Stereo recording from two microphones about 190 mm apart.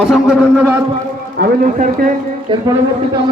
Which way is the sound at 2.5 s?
25° right (ahead or behind).